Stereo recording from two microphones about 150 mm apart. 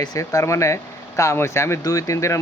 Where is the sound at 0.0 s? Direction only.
25° left (ahead or behind).